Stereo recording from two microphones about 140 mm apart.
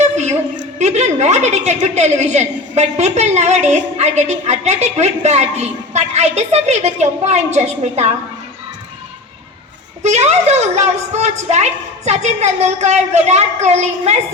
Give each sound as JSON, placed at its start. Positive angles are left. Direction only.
{"t": 0.0, "sound": "a woman's voice", "side_deg": -55}
{"t": 10.0, "sound": "a woman's voice", "side_deg": -55}